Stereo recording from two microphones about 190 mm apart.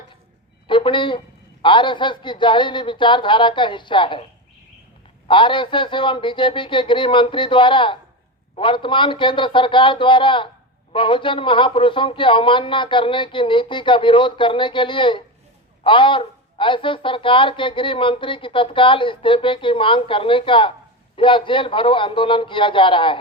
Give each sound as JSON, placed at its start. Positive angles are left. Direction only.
{"t": 0.7, "sound": "a sound", "side_deg": 25}
{"t": 1.6, "sound": "a woman's voice", "side_deg": 25}
{"t": 5.3, "sound": "a woman's voice", "side_deg": 25}